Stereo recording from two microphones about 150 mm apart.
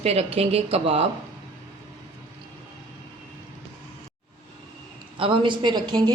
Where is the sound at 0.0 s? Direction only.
45° right (ahead or behind).